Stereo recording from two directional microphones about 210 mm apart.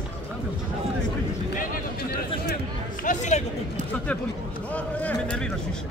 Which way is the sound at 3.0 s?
35° left (ahead or behind).